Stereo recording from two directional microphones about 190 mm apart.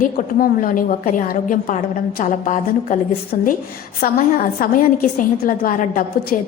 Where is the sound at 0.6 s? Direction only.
45° left (ahead or behind).